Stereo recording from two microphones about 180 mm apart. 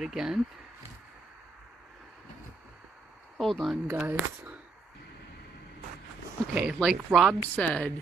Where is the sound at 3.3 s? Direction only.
Centre (ahead or behind).